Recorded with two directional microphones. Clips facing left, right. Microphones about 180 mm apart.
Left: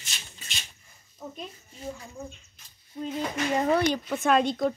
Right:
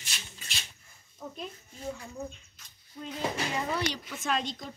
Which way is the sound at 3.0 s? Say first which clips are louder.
Left 7 dB; 25° left (ahead or behind).